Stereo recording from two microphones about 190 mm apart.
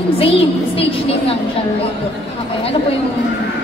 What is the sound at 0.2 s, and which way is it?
Speech, 30° left (ahead or behind).